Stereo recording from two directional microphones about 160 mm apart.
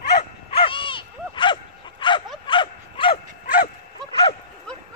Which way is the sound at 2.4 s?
30° left (ahead or behind).